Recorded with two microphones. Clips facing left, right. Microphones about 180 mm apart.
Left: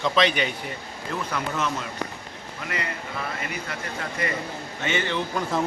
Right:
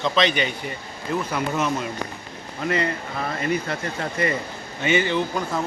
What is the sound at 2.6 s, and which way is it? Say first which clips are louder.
Speech: right 8 dB; 35° right (ahead or behind).